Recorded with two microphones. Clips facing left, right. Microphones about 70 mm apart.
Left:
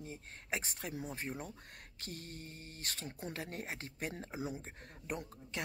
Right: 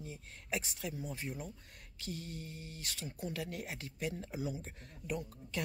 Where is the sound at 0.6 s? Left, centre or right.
Left.